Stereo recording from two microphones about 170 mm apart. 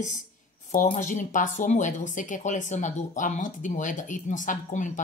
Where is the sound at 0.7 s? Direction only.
50° left (ahead or behind).